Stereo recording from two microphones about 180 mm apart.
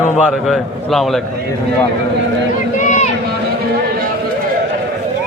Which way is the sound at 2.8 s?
45° left (ahead or behind).